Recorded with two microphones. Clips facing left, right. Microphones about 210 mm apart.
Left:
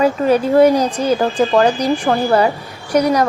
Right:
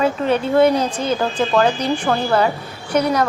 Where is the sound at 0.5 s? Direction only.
10° left (ahead or behind).